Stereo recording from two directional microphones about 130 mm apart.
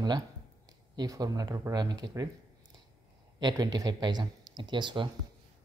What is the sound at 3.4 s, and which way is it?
Speech, 30° right (ahead or behind).